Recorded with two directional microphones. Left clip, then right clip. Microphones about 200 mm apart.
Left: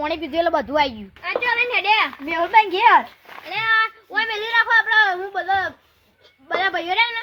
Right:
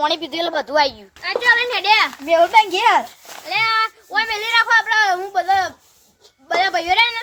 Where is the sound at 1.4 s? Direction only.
25° right (ahead or behind).